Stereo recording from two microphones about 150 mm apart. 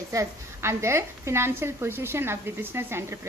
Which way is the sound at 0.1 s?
20° right (ahead or behind).